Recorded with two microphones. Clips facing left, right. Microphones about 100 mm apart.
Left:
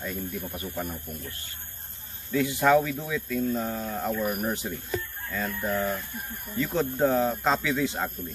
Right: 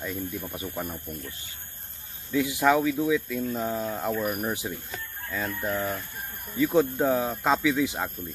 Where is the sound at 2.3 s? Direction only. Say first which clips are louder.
Left 1 dB; 10° right (ahead or behind).